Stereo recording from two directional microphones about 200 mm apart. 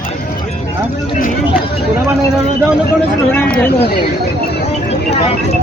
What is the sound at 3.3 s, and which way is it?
Speech, 10° left (ahead or behind).